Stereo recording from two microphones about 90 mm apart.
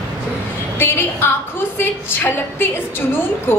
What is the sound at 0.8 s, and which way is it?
A woman's voice, 25° left (ahead or behind).